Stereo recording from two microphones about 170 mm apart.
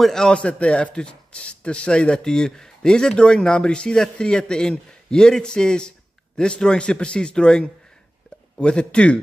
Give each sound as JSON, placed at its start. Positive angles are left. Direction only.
{"t": 0.0, "sound": "speech", "side_deg": 5}